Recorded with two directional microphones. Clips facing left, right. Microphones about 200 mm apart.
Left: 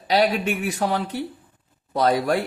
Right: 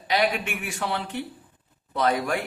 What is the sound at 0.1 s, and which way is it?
Speech, 40° left (ahead or behind).